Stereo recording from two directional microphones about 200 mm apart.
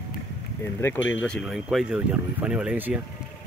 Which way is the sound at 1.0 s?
70° left (ahead or behind).